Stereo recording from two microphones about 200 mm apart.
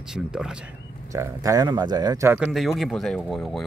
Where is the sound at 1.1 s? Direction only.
15° right (ahead or behind).